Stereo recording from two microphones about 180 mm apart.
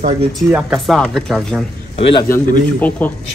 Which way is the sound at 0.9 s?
Centre (ahead or behind).